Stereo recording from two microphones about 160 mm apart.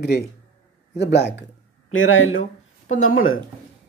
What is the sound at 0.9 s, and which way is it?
Speech, 90° left.